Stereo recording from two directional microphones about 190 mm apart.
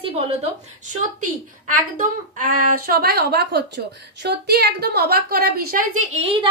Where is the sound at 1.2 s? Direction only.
45° right (ahead or behind).